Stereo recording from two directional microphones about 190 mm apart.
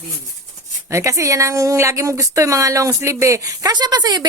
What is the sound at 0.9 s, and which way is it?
Speech, 15° right (ahead or behind).